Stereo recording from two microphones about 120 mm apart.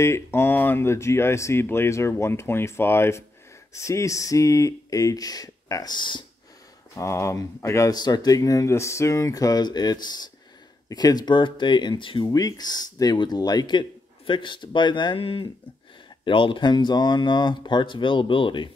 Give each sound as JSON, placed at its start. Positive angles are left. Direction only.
{"t": 0.0, "sound": "speech", "side_deg": 20}
{"t": 7.0, "sound": "speech", "side_deg": 25}
{"t": 12.3, "sound": "speech", "side_deg": 30}